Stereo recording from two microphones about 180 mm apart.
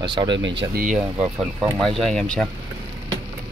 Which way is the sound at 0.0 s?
25° right (ahead or behind).